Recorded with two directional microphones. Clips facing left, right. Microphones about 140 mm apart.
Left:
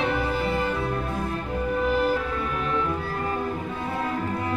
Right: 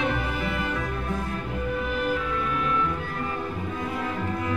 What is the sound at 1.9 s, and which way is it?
Music, 35° left (ahead or behind).